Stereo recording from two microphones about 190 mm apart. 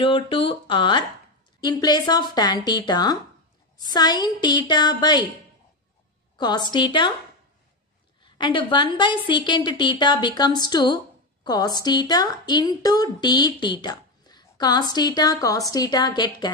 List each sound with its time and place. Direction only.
0.0 s speech: 25° left (ahead or behind)
6.3 s speech: 20° left (ahead or behind)
8.2 s speech: 25° left (ahead or behind)